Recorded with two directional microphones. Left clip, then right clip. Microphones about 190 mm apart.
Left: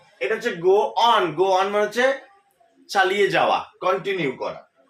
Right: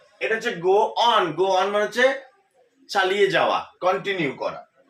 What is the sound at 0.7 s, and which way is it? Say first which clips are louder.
A man's voice: left 1 dB; 15° left (ahead or behind).